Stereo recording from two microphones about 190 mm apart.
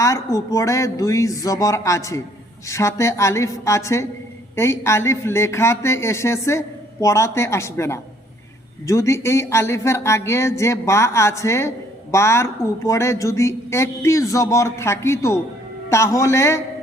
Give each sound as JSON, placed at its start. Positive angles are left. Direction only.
{"t": 0.0, "sound": "a man's voice", "side_deg": 15}